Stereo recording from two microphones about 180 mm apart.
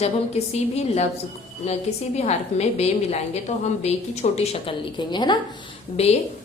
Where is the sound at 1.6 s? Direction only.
35° left (ahead or behind).